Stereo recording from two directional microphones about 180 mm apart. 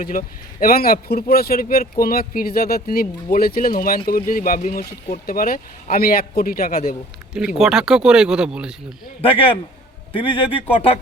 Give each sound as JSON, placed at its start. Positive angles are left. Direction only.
{"t": 0.0, "sound": "speech", "side_deg": 55}
{"t": 7.3, "sound": "speech", "side_deg": -5}
{"t": 10.3, "sound": "speech", "side_deg": 30}